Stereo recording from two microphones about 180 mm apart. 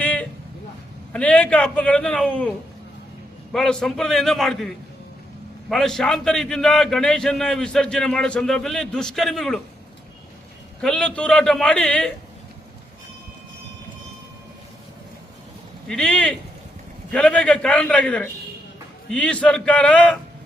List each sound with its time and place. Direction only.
0.0 s a sound: 5° left (ahead or behind)
1.1 s a man's voice: 5° left (ahead or behind)
3.5 s a man's voice: 5° left (ahead or behind)
10.8 s a man's voice: 5° left (ahead or behind)
15.9 s a man's voice: 5° left (ahead or behind)